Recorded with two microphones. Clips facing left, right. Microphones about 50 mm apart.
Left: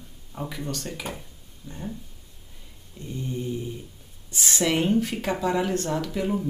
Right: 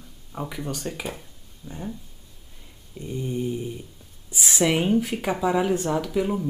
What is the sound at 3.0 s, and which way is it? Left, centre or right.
Mantra, right.